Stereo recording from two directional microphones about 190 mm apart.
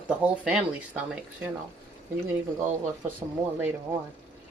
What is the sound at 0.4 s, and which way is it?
Speech, 5° right (ahead or behind).